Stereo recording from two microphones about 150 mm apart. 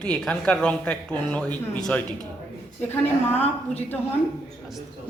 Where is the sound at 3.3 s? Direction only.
45° left (ahead or behind).